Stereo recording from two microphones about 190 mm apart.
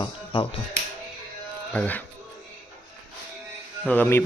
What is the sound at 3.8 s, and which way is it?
Speech, 10° left (ahead or behind).